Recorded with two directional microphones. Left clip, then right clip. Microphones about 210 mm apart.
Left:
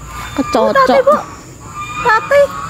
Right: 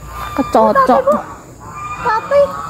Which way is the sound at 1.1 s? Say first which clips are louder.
Left 3 dB; 30° left (ahead or behind).